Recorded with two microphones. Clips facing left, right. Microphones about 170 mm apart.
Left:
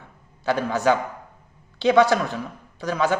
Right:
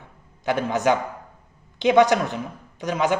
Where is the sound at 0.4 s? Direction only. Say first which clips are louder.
Even; 20° right (ahead or behind).